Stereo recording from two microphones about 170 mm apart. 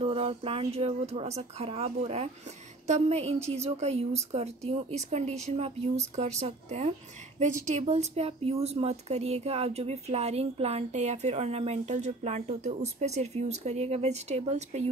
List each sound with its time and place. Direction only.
0.0 s a woman's voice: 35° right (ahead or behind)